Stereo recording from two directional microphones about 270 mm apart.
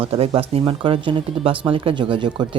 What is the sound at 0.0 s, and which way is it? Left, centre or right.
Speech, right.